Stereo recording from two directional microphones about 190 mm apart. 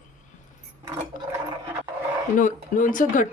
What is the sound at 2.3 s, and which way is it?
Speech, 45° left (ahead or behind).